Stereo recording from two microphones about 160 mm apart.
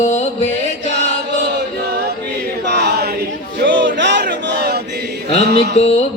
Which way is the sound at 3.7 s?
90° right.